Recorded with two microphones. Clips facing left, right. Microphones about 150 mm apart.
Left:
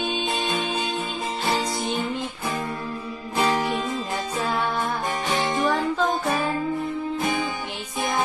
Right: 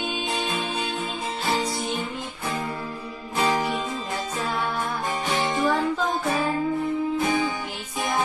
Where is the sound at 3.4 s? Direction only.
Centre (ahead or behind).